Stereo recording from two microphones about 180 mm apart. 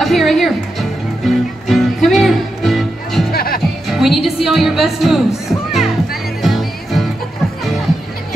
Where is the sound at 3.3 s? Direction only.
55° left (ahead or behind).